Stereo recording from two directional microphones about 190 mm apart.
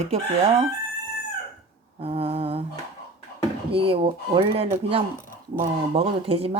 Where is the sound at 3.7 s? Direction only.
30° right (ahead or behind).